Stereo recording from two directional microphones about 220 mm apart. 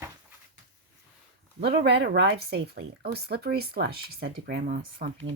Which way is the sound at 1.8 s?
50° right (ahead or behind).